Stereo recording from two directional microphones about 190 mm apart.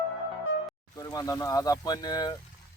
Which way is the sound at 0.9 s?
20° left (ahead or behind).